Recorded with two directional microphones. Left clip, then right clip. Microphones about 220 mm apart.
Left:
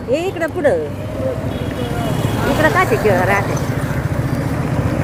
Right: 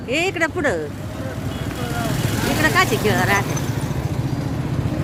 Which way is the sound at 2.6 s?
40° right (ahead or behind).